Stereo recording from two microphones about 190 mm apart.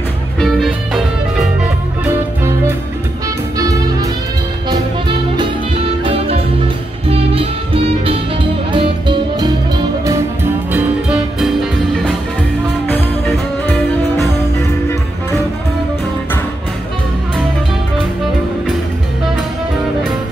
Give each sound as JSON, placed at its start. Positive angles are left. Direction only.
{"t": 0.4, "sound": "music", "side_deg": 0}
{"t": 3.5, "sound": "music", "side_deg": -20}
{"t": 10.7, "sound": "music", "side_deg": -5}